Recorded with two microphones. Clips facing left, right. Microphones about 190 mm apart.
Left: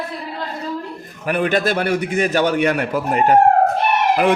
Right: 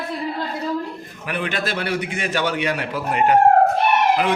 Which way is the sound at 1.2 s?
45° left (ahead or behind).